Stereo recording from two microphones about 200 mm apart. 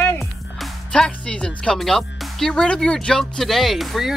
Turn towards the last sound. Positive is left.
turn(degrees=0)  # may be behind; listen again after turning